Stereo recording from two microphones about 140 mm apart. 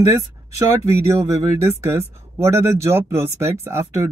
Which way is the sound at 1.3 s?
20° right (ahead or behind).